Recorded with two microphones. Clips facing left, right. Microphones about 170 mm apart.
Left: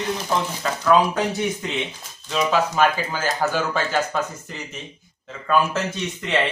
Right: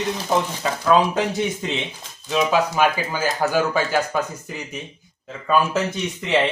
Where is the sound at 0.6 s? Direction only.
15° right (ahead or behind).